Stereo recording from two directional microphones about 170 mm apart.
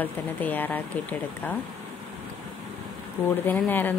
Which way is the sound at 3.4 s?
10° left (ahead or behind).